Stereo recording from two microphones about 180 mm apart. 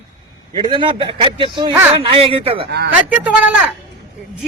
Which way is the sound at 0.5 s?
25° right (ahead or behind).